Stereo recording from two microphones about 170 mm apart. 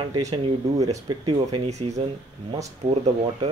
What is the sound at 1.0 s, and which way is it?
Speech, 25° right (ahead or behind).